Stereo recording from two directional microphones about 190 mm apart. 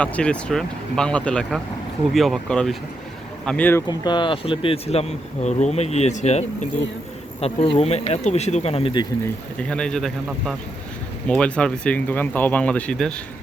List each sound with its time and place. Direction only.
0.0 s speech: 5° left (ahead or behind)
3.8 s speech: 25° left (ahead or behind)
9.2 s speech: 5° left (ahead or behind)